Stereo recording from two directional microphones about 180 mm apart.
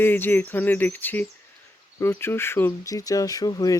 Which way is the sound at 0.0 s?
10° left (ahead or behind).